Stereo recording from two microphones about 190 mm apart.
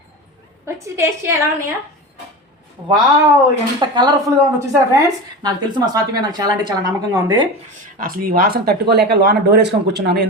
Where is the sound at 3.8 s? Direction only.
25° right (ahead or behind).